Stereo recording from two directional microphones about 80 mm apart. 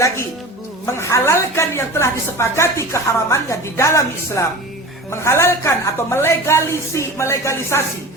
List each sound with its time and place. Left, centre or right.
0.9 s a woman's voice: left